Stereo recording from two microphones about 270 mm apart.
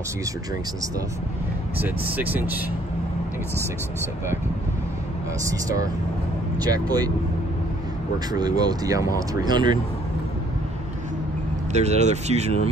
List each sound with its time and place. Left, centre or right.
1.8 s speech: centre
6.6 s speech: centre
8.3 s speech: centre
11.7 s speech: right